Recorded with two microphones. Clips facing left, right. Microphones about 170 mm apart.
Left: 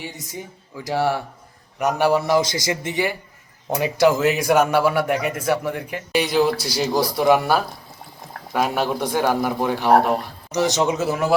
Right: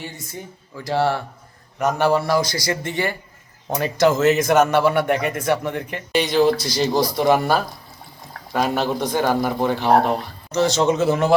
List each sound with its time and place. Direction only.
0.0 s speech: 15° left (ahead or behind)